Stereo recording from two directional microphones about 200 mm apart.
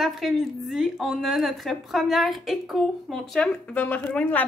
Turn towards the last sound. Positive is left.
turn(degrees=10)  # may be behind; listen again after turning